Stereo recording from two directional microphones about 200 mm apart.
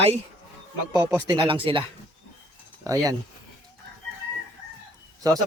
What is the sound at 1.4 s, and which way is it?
Speech, 25° right (ahead or behind).